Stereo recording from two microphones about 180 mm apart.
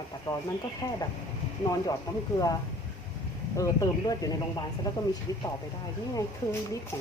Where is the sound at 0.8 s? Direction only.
20° left (ahead or behind).